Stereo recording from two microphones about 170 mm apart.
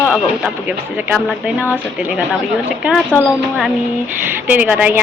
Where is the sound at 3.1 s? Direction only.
5° right (ahead or behind).